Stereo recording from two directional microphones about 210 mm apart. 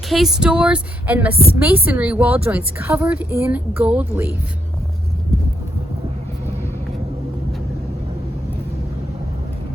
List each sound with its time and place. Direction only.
0.1 s a woman's voice: centre (ahead or behind)